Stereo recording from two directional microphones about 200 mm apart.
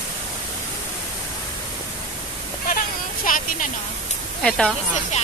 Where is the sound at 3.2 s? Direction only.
45° left (ahead or behind).